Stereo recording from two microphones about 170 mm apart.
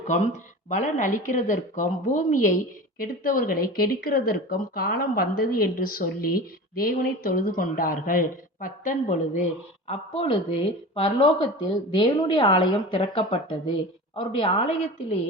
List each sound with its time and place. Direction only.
0.7 s a woman's voice: 45° left (ahead or behind)
9.9 s a woman's voice: 35° left (ahead or behind)